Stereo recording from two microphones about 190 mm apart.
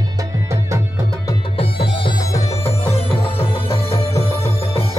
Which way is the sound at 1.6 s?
30° left (ahead or behind).